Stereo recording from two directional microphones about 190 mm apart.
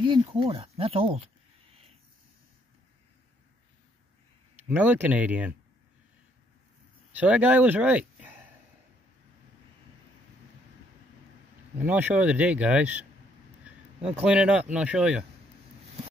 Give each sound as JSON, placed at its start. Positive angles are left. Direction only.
{"t": 0.0, "sound": "speech", "side_deg": -25}
{"t": 4.6, "sound": "speech", "side_deg": -10}
{"t": 7.2, "sound": "speech", "side_deg": -10}
{"t": 11.8, "sound": "speech", "side_deg": -10}